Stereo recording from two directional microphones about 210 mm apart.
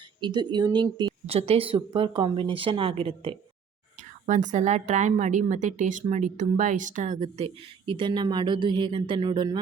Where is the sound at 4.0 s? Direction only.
35° right (ahead or behind).